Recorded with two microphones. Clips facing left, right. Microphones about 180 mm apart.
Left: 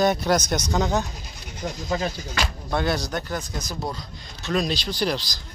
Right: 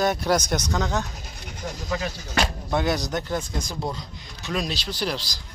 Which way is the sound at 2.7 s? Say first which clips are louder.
Left 1 dB; 15° right (ahead or behind).